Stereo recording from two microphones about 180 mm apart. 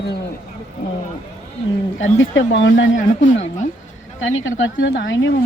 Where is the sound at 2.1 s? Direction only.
90° left.